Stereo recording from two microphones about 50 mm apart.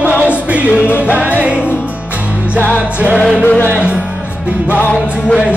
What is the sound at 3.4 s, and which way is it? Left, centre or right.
Music, left.